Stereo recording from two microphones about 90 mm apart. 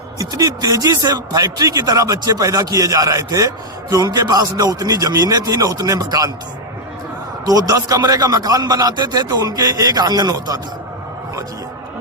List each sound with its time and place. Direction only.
0.2 s a man's voice: 40° right (ahead or behind)
7.4 s a man's voice: 45° right (ahead or behind)